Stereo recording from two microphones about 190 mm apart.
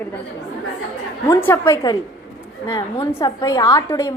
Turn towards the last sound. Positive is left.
turn(degrees=15)  # may be behind; listen again after turning